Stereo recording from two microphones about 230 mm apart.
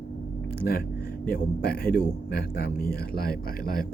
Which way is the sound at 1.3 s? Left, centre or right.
Left.